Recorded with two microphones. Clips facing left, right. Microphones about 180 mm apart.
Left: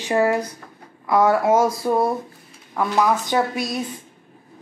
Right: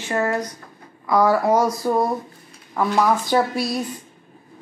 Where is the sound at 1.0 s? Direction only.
Centre (ahead or behind).